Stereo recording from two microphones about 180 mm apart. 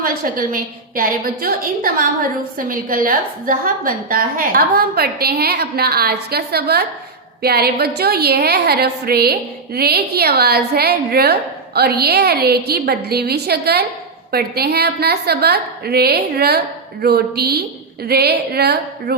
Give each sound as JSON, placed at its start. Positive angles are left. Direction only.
{"t": 0.0, "sound": "a woman's voice", "side_deg": -50}